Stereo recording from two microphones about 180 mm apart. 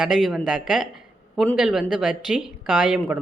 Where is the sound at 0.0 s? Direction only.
Centre (ahead or behind).